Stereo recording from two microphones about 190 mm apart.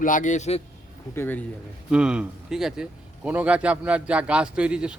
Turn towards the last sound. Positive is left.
turn(degrees=-5)  # may be behind; listen again after turning